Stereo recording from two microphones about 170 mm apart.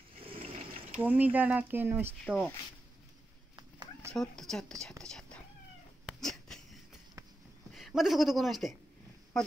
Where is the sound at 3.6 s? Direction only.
25° right (ahead or behind).